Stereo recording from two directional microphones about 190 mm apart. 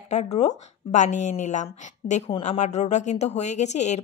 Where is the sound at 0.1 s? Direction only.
35° left (ahead or behind).